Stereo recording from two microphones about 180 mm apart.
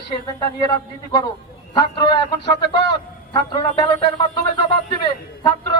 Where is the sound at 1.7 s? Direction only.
25° left (ahead or behind).